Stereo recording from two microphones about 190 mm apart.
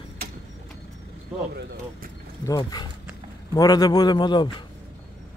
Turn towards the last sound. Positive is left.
turn(degrees=25)  # may be behind; listen again after turning